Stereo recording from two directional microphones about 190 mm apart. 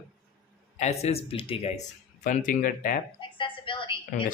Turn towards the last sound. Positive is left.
turn(degrees=25)  # may be behind; listen again after turning